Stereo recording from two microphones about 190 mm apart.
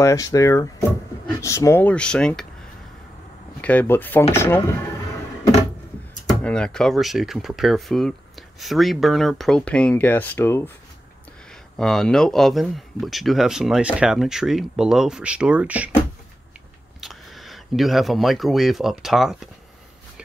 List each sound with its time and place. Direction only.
0.0 s speech: 15° left (ahead or behind)
3.6 s speech: 10° left (ahead or behind)
6.4 s speech: 5° left (ahead or behind)
11.7 s speech: centre (ahead or behind)
17.0 s speech: centre (ahead or behind)